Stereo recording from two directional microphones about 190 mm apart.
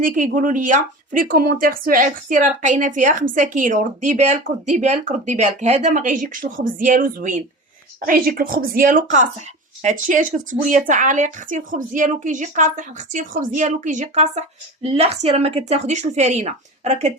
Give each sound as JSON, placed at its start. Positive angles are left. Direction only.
{"t": 0.0, "sound": "speech", "side_deg": -45}